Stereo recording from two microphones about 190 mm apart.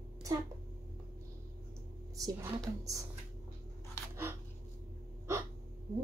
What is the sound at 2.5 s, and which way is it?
Speech, 15° right (ahead or behind).